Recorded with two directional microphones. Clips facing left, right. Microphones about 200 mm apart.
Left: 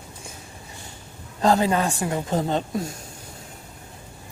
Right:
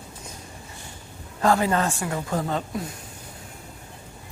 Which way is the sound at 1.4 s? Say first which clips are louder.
Left 1 dB; 20° left (ahead or behind).